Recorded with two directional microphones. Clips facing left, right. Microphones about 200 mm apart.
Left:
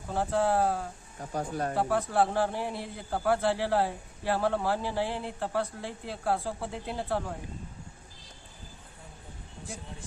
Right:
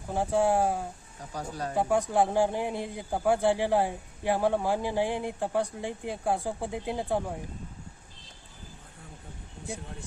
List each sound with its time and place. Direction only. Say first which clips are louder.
0.1 s a man's voice: right 2 dB; 15° right (ahead or behind)
1.2 s speech: left 3 dB; 50° left (ahead or behind)
1.7 s a man's voice: right 3 dB; 15° right (ahead or behind)